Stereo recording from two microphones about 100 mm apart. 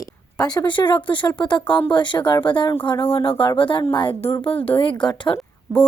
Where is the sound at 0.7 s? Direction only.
50° left (ahead or behind).